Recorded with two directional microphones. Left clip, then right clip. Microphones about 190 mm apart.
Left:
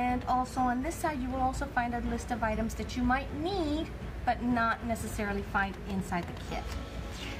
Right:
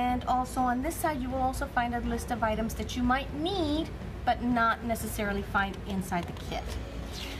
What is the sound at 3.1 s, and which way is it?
A woman's voice, 10° right (ahead or behind).